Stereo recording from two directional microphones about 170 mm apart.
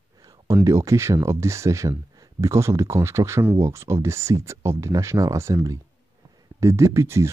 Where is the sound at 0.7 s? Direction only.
15° right (ahead or behind).